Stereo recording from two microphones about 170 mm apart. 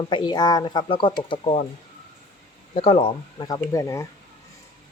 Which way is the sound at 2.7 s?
35° left (ahead or behind).